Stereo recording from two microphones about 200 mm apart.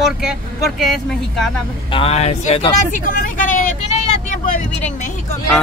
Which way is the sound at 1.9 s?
30° left (ahead or behind).